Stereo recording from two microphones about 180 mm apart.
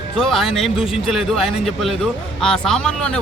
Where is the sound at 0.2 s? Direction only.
Centre (ahead or behind).